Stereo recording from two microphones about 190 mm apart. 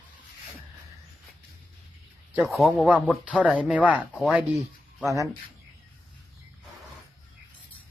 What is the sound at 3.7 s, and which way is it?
Speech, 5° right (ahead or behind).